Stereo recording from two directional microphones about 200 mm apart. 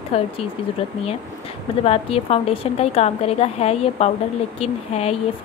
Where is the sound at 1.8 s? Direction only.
30° left (ahead or behind).